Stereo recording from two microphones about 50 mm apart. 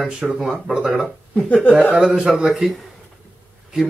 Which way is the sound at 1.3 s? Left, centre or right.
Left.